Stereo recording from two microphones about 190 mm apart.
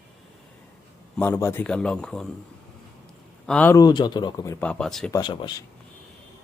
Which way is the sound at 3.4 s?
5° left (ahead or behind).